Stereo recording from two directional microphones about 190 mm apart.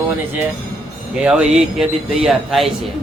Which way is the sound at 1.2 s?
5° right (ahead or behind).